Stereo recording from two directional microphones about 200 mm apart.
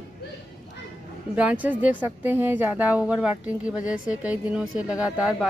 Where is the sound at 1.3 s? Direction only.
5° right (ahead or behind).